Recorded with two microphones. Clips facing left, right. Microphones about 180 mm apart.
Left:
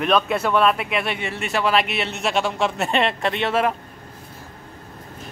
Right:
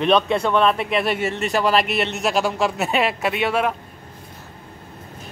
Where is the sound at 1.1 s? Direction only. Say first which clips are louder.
Right 5 dB; 40° right (ahead or behind).